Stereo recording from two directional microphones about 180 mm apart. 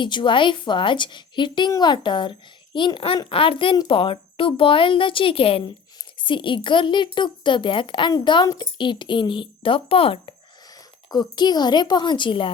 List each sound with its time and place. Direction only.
0.0 s a woman's voice: 25° left (ahead or behind)